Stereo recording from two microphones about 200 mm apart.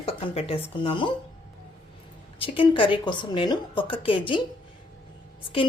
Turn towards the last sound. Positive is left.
turn(degrees=25)  # may be behind; listen again after turning